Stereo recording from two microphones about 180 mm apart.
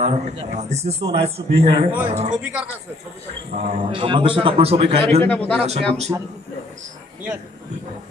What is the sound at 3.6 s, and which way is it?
A man's voice, 35° right (ahead or behind).